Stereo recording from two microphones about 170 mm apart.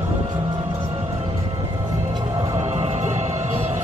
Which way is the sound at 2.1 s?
20° right (ahead or behind).